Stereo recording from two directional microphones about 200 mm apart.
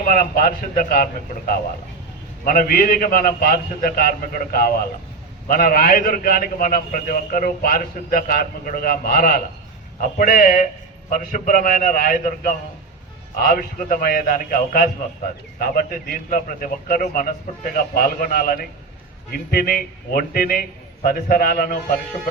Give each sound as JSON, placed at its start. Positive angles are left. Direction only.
{"t": 0.0, "sound": "a man's voice", "side_deg": 45}
{"t": 2.4, "sound": "a man's voice", "side_deg": 45}